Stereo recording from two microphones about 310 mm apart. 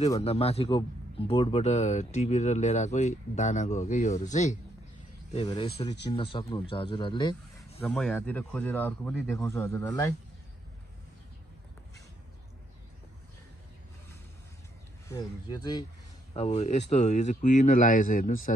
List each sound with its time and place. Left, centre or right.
0.1 s speech: centre
15.0 s speech: centre